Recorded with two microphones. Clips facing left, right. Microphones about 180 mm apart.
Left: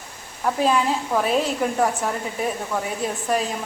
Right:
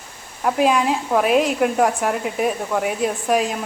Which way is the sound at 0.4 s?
10° right (ahead or behind).